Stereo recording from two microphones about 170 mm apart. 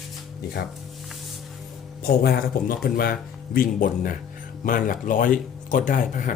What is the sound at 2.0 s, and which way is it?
Speech, 65° left (ahead or behind).